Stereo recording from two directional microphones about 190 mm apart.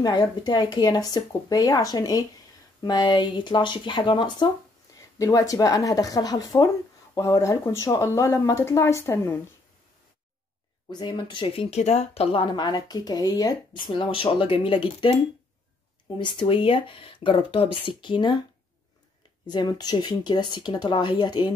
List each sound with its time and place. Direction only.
0.0 s speech: 20° left (ahead or behind)
10.9 s speech: 25° left (ahead or behind)
16.2 s speech: 25° left (ahead or behind)
19.4 s speech: 20° left (ahead or behind)